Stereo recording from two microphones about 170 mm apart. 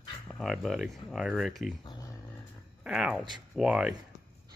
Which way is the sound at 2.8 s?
5° right (ahead or behind).